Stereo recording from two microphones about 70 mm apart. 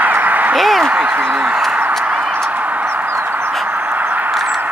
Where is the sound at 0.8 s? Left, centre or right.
Right.